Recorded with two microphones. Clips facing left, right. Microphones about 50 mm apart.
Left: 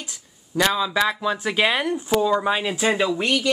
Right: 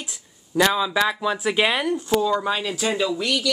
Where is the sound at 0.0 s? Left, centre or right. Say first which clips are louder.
Right 1 dB; centre.